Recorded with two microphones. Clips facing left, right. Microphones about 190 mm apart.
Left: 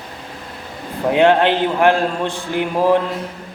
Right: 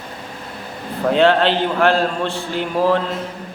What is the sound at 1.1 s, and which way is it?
A man's voice, 15° left (ahead or behind).